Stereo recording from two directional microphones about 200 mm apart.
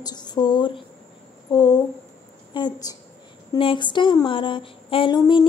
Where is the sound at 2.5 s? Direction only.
20° left (ahead or behind).